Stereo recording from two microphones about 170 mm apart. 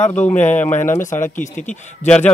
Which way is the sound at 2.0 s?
5° left (ahead or behind).